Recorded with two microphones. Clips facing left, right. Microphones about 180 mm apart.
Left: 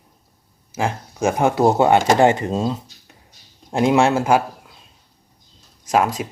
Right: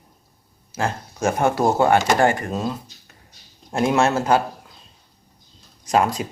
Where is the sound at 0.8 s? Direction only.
15° left (ahead or behind).